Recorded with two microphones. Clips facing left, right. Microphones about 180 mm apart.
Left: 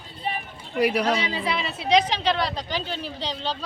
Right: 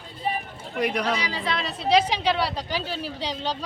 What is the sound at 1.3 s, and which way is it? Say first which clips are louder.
Speech: left 1 dB; 10° left (ahead or behind).